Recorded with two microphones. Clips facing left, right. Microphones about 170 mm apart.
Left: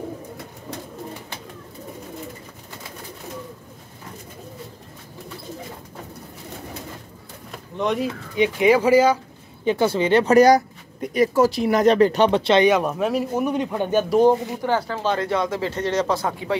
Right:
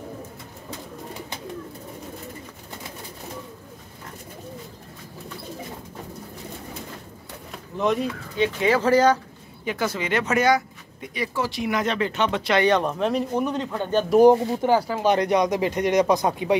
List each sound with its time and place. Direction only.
7.7 s speech: centre (ahead or behind)
8.4 s speech: 15° left (ahead or behind)
9.7 s speech: 30° left (ahead or behind)
12.6 s speech: 5° left (ahead or behind)
14.2 s speech: 15° right (ahead or behind)